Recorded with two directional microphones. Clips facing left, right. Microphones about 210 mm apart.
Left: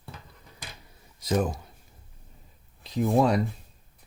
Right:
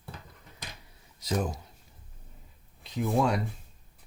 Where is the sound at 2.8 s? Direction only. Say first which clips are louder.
Left 4 dB; 35° left (ahead or behind).